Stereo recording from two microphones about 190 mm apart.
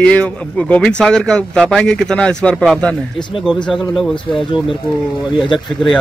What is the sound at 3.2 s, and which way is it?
Speech, 25° left (ahead or behind).